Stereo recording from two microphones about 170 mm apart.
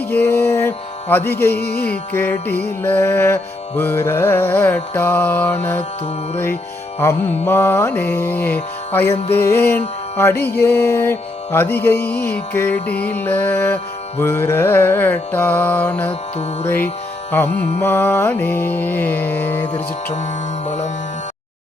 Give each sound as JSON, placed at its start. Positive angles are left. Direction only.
{"t": 0.1, "sound": "mantra", "side_deg": 10}
{"t": 1.5, "sound": "speech", "side_deg": 70}
{"t": 2.6, "sound": "mantra", "side_deg": 15}
{"t": 9.7, "sound": "music", "side_deg": 15}
{"t": 10.4, "sound": "mantra", "side_deg": 10}
{"t": 20.7, "sound": "music", "side_deg": 40}